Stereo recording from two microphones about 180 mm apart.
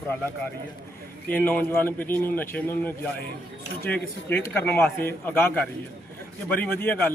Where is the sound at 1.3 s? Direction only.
10° left (ahead or behind).